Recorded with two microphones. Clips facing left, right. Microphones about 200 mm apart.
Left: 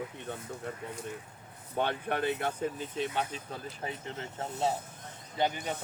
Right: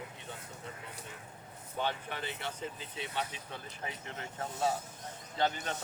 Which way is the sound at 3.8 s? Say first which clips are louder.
Left 3 dB; 30° left (ahead or behind).